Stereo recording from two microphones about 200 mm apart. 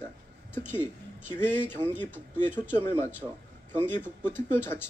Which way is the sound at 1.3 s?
10° left (ahead or behind).